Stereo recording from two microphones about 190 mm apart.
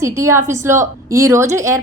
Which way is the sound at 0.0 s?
15° right (ahead or behind).